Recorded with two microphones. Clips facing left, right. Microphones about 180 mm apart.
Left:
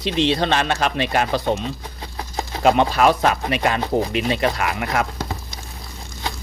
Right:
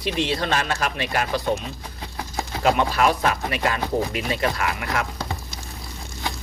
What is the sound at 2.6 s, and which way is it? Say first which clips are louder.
Speech: left 4 dB; 25° left (ahead or behind).